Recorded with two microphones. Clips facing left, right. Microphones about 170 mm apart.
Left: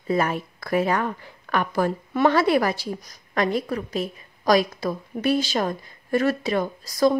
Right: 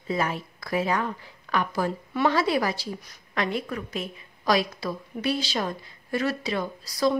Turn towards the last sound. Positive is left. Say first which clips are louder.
# left 4 dB
turn(degrees=45)  # may be behind; listen again after turning